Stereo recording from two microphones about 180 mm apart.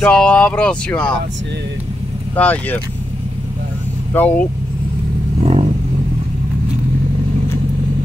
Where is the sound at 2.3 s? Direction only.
10° left (ahead or behind).